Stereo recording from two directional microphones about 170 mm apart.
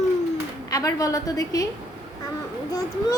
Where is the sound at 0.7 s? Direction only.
20° left (ahead or behind).